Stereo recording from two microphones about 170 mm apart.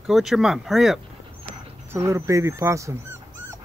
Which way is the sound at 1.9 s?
15° right (ahead or behind).